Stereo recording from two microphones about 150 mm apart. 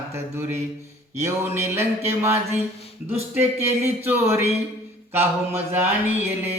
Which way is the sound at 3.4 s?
15° right (ahead or behind).